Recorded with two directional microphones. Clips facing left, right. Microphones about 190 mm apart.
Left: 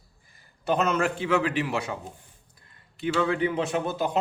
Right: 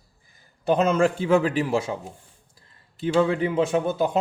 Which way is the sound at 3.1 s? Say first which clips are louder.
Right 5 dB; 30° right (ahead or behind).